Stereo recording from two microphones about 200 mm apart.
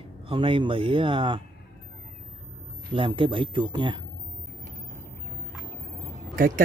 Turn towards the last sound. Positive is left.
turn(degrees=-45)  # may be behind; listen again after turning